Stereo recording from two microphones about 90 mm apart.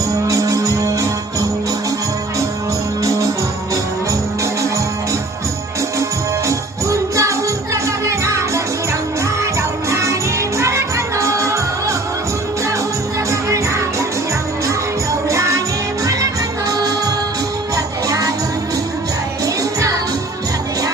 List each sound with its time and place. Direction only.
0.1 s music: 40° right (ahead or behind)
3.0 s music: 35° right (ahead or behind)
6.5 s music: 35° right (ahead or behind)
15.3 s music: 35° right (ahead or behind)
16.6 s music: 40° right (ahead or behind)